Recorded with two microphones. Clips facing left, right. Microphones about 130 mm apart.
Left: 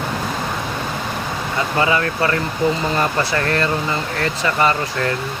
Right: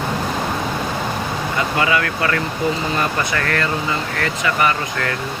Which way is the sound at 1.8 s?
30° left (ahead or behind).